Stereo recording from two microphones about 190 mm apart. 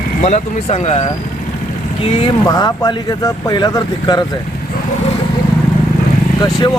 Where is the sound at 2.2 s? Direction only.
25° left (ahead or behind).